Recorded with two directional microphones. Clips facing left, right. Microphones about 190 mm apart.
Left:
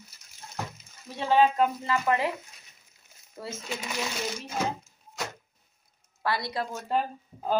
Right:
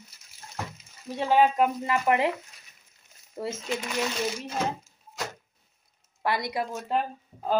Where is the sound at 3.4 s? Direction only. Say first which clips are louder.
Right 6 dB; 20° right (ahead or behind).